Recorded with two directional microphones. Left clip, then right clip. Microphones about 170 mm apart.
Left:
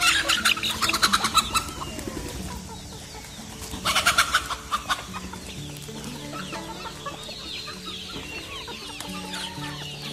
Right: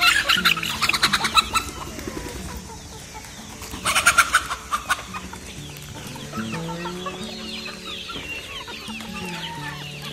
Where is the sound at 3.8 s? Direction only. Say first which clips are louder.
Right 4 dB; centre (ahead or behind).